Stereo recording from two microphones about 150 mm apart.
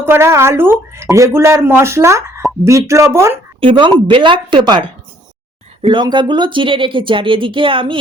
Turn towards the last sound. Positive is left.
turn(degrees=-35)  # may be behind; listen again after turning